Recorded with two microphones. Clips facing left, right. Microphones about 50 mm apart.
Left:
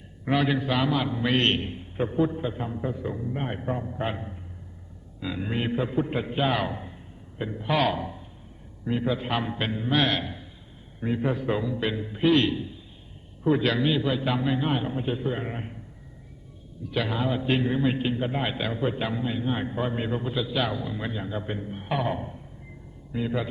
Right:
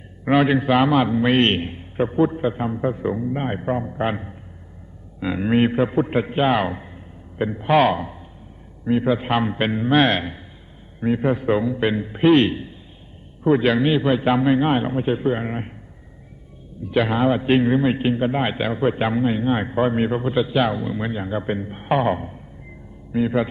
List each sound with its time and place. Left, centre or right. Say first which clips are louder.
0.3 s a man's voice: right 7 dB; right
5.2 s a man's voice: right 10 dB; right
11.0 s a man's voice: right 7 dB; right
16.8 s a man's voice: right 9 dB; right